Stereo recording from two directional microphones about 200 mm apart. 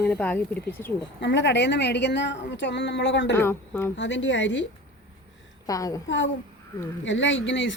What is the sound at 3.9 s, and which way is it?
Speech, 65° left (ahead or behind).